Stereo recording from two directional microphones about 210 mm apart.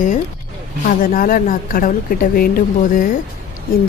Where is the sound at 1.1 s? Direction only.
40° left (ahead or behind).